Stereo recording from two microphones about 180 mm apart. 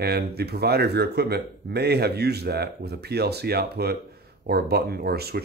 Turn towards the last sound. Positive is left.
turn(degrees=-60)  # may be behind; listen again after turning